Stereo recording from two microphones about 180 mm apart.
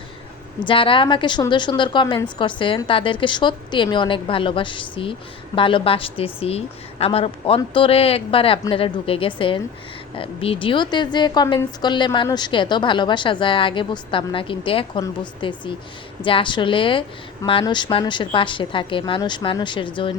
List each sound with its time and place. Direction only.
0.6 s a woman's voice: 30° left (ahead or behind)